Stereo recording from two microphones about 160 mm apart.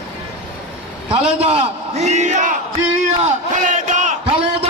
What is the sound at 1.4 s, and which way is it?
A man's voice, 40° right (ahead or behind).